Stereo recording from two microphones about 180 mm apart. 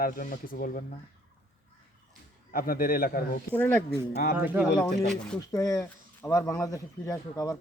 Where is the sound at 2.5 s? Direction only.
55° left (ahead or behind).